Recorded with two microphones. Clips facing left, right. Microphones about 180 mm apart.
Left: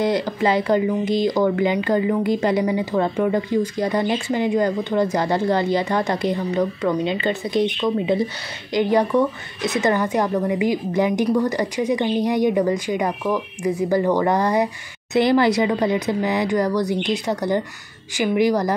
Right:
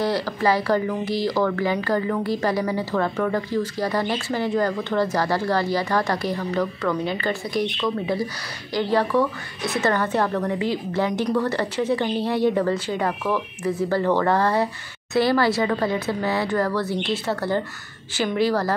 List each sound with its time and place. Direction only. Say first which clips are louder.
0.0 s a woman's voice: left 2 dB; 20° left (ahead or behind)